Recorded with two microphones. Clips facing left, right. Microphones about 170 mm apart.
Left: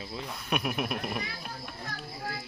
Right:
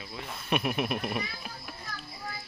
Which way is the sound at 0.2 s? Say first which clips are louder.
Right 2 dB; centre (ahead or behind).